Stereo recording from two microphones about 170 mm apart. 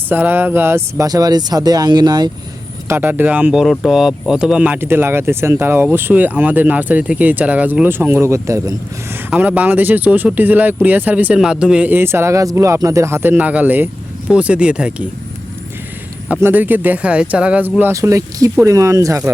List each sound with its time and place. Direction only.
0.1 s speech: 10° right (ahead or behind)
2.9 s speech: 10° right (ahead or behind)
16.3 s speech: 10° right (ahead or behind)